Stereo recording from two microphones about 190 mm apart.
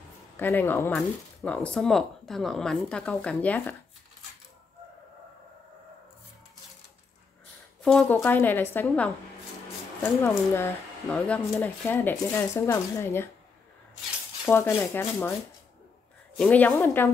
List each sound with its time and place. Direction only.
0.4 s speech: 10° left (ahead or behind)
7.8 s speech: 5° left (ahead or behind)
14.8 s speech: 10° left (ahead or behind)
16.3 s speech: 10° left (ahead or behind)